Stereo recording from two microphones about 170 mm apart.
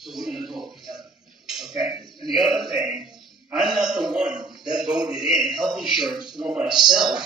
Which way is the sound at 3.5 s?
5° right (ahead or behind).